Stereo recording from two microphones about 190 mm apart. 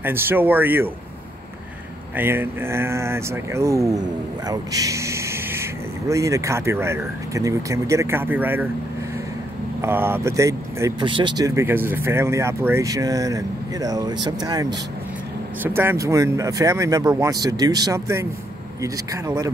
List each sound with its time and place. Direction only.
0.0 s speech: 10° right (ahead or behind)
2.1 s speech: 10° right (ahead or behind)
9.8 s speech: 10° right (ahead or behind)